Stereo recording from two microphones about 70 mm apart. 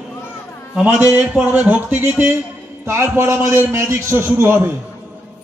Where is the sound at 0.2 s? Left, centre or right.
Left.